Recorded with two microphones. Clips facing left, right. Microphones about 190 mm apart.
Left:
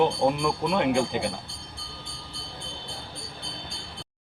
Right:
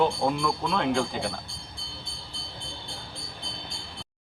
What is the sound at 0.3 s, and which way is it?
A man's voice, 15° left (ahead or behind).